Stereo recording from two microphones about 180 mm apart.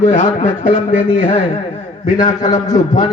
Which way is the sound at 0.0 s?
40° left (ahead or behind).